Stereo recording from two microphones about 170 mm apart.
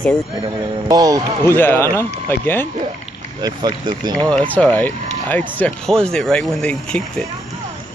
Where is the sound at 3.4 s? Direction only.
25° right (ahead or behind).